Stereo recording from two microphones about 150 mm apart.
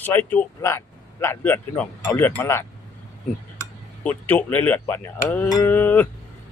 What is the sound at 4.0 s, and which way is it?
Speech, 10° left (ahead or behind).